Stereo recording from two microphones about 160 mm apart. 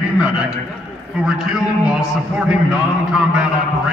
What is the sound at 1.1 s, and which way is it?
A man's voice, 5° right (ahead or behind).